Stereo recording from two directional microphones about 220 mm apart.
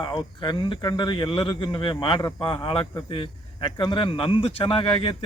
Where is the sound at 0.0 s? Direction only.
20° left (ahead or behind).